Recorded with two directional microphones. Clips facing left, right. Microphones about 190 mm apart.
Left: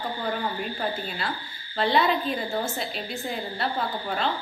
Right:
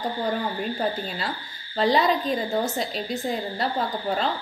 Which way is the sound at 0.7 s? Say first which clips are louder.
Right 3 dB; 40° right (ahead or behind).